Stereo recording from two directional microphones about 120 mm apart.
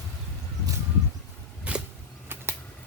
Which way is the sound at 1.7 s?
10° right (ahead or behind).